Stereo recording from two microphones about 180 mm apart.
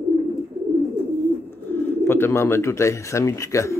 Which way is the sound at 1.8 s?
15° left (ahead or behind).